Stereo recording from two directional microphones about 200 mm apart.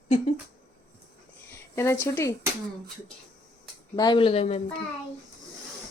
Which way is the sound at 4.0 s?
25° left (ahead or behind).